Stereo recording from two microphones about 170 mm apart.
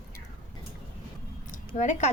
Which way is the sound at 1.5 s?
45° left (ahead or behind).